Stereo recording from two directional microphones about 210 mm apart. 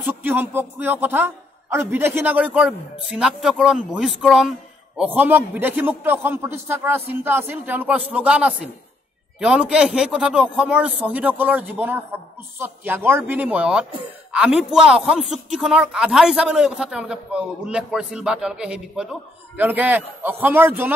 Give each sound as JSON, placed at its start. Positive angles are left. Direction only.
{"t": 0.0, "sound": "a man's voice", "side_deg": -10}